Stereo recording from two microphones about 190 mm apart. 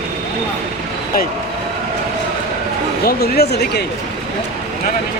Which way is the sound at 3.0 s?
55° left (ahead or behind).